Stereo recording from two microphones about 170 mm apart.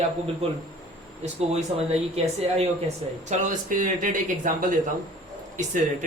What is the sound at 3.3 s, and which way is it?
Speech, 50° right (ahead or behind).